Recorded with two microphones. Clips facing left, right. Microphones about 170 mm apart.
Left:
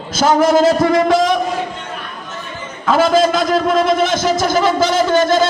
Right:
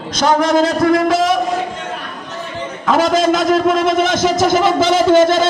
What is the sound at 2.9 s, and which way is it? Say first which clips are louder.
A man's voice: left 1 dB; 20° right (ahead or behind).